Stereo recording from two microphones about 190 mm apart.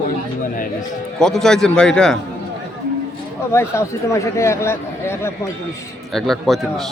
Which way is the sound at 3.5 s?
15° left (ahead or behind).